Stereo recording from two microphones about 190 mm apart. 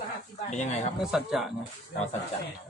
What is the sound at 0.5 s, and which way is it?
Speech, 35° left (ahead or behind).